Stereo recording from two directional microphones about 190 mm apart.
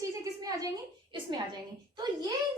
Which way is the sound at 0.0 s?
20° right (ahead or behind).